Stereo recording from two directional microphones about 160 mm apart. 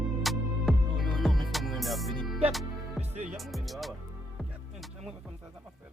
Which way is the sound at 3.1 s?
45° right (ahead or behind).